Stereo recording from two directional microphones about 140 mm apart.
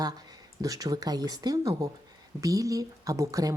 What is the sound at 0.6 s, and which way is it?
Speech, 25° right (ahead or behind).